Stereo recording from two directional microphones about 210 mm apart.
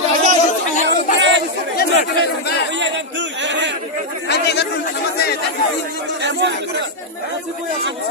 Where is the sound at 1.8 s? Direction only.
50° left (ahead or behind).